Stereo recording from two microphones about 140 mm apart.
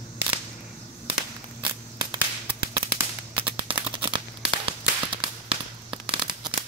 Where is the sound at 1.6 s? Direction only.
35° right (ahead or behind).